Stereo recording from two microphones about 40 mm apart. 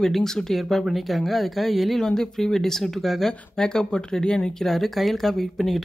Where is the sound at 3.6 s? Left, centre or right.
Centre.